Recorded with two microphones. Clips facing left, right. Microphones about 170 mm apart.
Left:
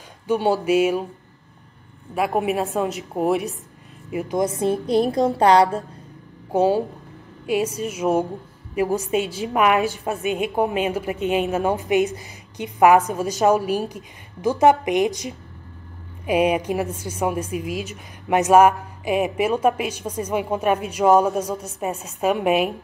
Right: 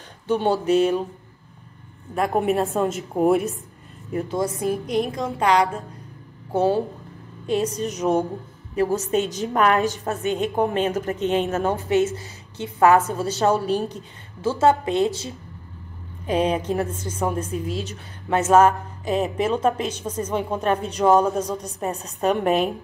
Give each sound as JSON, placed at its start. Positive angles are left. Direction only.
{"t": 0.3, "sound": "a woman's voice", "side_deg": 10}
{"t": 2.1, "sound": "a woman's voice", "side_deg": 5}
{"t": 4.1, "sound": "a woman's voice", "side_deg": 10}
{"t": 6.5, "sound": "a woman's voice", "side_deg": 15}